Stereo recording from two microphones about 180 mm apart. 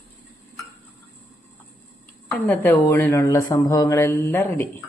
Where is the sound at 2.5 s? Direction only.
10° left (ahead or behind).